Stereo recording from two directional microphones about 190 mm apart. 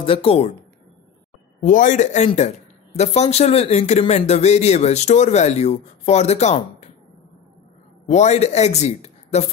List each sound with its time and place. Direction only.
0.0 s speech: 30° left (ahead or behind)
1.6 s speech: 40° left (ahead or behind)
8.1 s speech: 35° left (ahead or behind)